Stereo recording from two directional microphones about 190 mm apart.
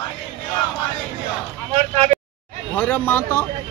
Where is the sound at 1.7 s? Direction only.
35° right (ahead or behind).